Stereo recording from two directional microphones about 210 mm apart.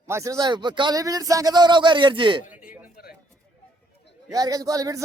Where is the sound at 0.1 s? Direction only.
15° right (ahead or behind).